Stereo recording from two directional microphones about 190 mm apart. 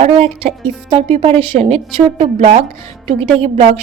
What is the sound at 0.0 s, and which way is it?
A woman's voice, 30° right (ahead or behind).